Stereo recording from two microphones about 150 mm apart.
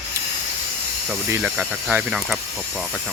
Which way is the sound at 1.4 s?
10° right (ahead or behind).